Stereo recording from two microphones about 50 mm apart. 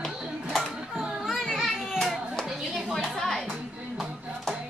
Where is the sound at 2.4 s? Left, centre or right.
Centre.